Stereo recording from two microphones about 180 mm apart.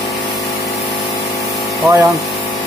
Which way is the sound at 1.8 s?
20° right (ahead or behind).